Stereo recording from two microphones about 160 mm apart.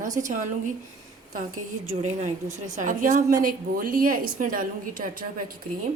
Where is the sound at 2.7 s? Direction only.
55° right (ahead or behind).